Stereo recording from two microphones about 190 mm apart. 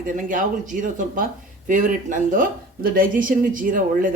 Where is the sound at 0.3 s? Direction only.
45° right (ahead or behind).